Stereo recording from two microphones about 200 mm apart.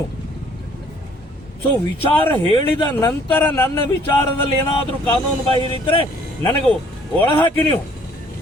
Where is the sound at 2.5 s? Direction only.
20° left (ahead or behind).